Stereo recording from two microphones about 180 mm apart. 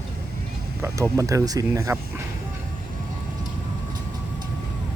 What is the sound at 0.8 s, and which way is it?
Speech, 15° right (ahead or behind).